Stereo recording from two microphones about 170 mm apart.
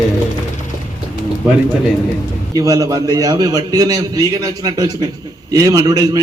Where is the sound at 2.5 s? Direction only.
20° right (ahead or behind).